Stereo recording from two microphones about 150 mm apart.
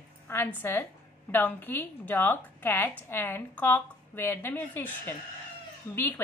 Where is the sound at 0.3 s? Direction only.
15° left (ahead or behind).